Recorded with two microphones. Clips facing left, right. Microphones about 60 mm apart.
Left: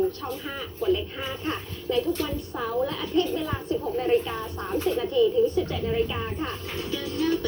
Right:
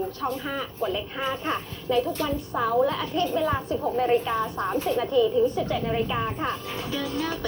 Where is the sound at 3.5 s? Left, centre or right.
Right.